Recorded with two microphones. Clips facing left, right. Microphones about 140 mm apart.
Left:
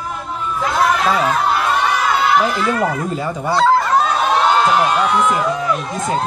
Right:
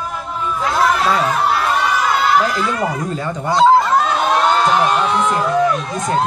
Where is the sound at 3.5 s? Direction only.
20° right (ahead or behind).